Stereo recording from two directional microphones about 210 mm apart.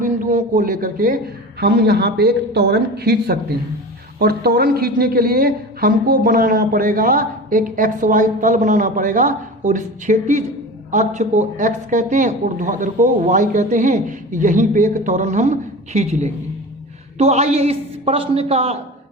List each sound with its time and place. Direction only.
0.0 s a man's voice: 40° right (ahead or behind)